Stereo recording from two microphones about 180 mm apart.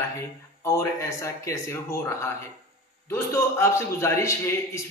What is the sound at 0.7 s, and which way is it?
A man's voice, 15° left (ahead or behind).